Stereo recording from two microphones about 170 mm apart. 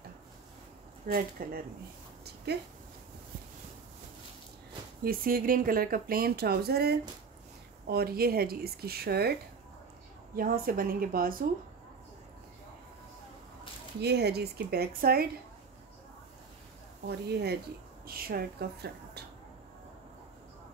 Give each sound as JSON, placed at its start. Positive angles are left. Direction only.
{"t": 1.0, "sound": "speech", "side_deg": -55}
{"t": 2.2, "sound": "a sound", "side_deg": -70}
{"t": 5.0, "sound": "speech", "side_deg": -60}
{"t": 10.3, "sound": "speech", "side_deg": -60}
{"t": 14.0, "sound": "speech", "side_deg": -75}
{"t": 17.1, "sound": "speech", "side_deg": -75}
{"t": 18.0, "sound": "speech", "side_deg": -60}